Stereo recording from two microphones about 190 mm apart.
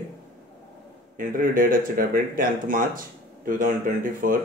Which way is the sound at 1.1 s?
45° right (ahead or behind).